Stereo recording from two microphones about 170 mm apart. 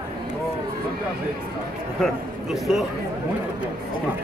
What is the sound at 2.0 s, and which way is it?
Speech, 5° right (ahead or behind).